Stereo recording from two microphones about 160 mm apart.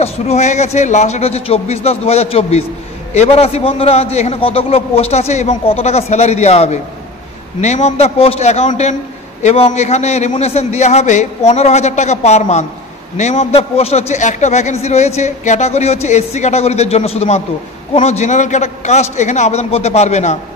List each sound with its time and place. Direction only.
0.0 s a man's voice: 45° left (ahead or behind)